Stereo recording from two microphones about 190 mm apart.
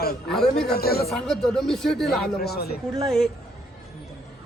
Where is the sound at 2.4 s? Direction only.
55° left (ahead or behind).